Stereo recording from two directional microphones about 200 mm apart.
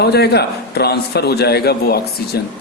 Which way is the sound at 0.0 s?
55° left (ahead or behind).